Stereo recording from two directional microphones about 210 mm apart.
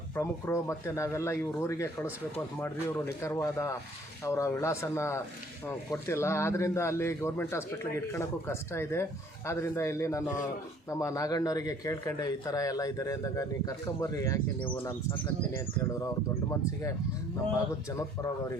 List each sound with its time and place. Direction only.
0.2 s a man's voice: 10° left (ahead or behind)
17.9 s a man's voice: 15° left (ahead or behind)